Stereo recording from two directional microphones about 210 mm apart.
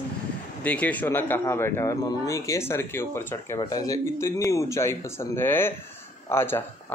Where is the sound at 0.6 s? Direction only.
5° left (ahead or behind).